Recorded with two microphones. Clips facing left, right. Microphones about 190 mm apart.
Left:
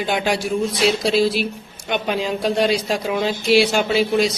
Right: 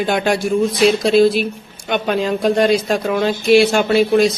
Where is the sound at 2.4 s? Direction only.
50° right (ahead or behind).